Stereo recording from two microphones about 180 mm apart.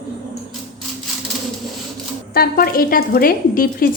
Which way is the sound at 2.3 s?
55° left (ahead or behind).